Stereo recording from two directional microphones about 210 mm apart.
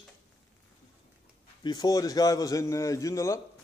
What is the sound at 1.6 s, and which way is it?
A man's voice, 20° left (ahead or behind).